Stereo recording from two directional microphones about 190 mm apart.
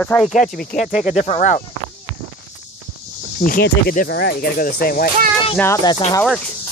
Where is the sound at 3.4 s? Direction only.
50° left (ahead or behind).